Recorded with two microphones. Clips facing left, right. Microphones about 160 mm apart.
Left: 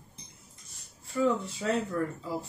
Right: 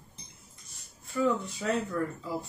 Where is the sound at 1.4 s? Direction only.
30° left (ahead or behind).